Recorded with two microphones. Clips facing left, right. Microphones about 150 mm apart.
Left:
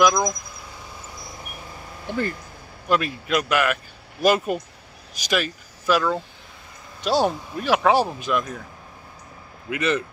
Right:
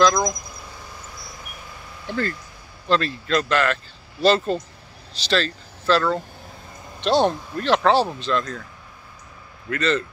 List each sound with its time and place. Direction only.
0.1 s speech: centre (ahead or behind)
2.0 s speech: 15° left (ahead or behind)
9.7 s speech: 15° left (ahead or behind)